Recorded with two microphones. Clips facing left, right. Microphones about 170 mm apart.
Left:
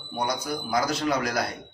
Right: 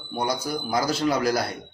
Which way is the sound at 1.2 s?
30° right (ahead or behind).